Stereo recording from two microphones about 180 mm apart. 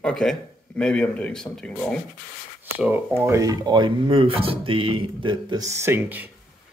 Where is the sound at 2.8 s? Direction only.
10° right (ahead or behind).